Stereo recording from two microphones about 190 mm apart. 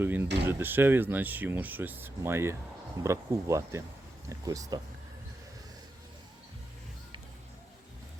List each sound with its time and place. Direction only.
0.0 s speech: 10° right (ahead or behind)